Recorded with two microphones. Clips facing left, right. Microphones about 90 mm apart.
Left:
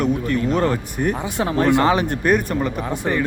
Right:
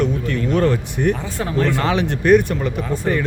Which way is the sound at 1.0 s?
20° left (ahead or behind).